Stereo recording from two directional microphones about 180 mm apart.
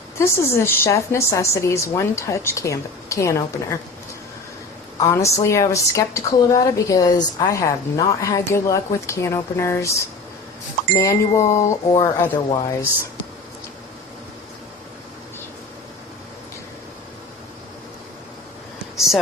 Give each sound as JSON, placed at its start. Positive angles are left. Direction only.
{"t": 0.2, "sound": "a woman's voice", "side_deg": 15}
{"t": 4.9, "sound": "a woman's voice", "side_deg": 20}